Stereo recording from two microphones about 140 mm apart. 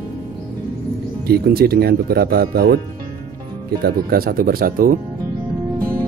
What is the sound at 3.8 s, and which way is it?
Speech, 90° right.